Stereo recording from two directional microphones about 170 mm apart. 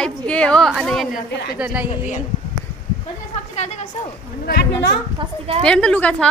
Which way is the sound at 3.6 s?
40° left (ahead or behind).